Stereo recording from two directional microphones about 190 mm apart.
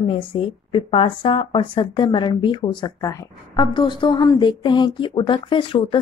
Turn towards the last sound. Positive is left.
turn(degrees=25)  # may be behind; listen again after turning